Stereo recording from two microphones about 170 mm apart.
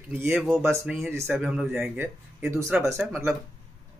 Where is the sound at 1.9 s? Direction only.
15° right (ahead or behind).